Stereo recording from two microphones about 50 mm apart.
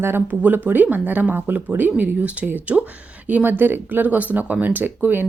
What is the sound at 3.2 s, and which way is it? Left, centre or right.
Speech, right.